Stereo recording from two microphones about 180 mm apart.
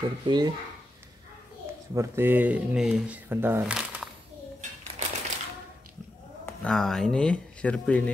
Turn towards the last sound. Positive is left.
turn(degrees=5)  # may be behind; listen again after turning